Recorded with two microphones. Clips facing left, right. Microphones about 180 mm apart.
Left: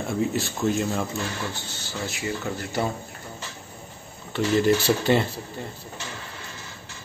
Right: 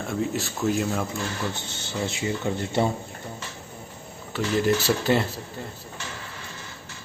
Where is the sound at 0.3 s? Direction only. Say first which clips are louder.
Left 1 dB; centre (ahead or behind).